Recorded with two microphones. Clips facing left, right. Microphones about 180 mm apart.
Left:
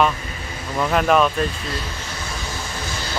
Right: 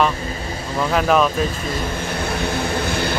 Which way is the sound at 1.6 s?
50° right (ahead or behind).